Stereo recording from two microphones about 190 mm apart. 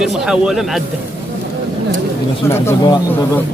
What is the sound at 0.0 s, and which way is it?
Speech, centre (ahead or behind).